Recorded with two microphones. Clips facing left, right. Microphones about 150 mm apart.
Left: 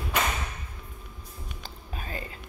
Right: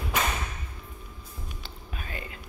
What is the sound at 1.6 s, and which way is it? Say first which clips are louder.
Music: left 2 dB; 35° left (ahead or behind).